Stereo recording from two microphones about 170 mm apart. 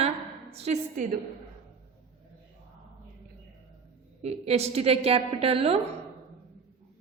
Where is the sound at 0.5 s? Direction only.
40° right (ahead or behind).